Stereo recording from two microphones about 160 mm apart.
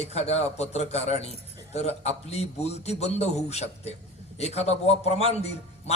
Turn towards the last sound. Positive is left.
turn(degrees=40)  # may be behind; listen again after turning